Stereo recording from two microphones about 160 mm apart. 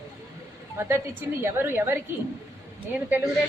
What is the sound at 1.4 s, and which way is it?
Speech, 15° right (ahead or behind).